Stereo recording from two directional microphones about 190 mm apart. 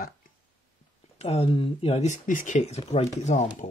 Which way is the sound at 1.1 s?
30° left (ahead or behind).